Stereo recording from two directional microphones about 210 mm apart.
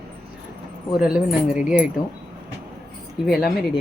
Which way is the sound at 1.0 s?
5° right (ahead or behind).